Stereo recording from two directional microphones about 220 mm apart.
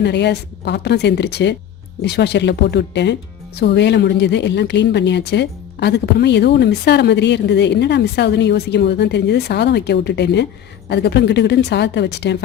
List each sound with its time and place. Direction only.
0.0 s speech: 50° left (ahead or behind)